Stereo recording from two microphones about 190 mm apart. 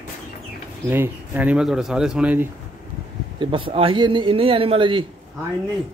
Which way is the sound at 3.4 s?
25° right (ahead or behind).